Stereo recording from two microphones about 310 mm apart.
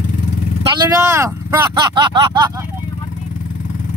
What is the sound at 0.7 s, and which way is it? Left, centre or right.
Speech, centre.